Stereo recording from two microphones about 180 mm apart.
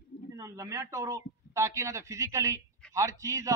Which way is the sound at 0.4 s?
15° right (ahead or behind).